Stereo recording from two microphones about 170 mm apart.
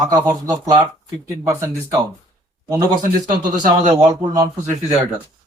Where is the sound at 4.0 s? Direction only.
20° right (ahead or behind).